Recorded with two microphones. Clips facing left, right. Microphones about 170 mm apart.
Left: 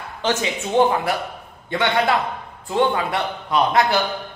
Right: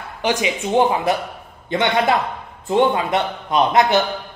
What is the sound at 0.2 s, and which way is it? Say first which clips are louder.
A man's voice: right 2 dB; 15° right (ahead or behind).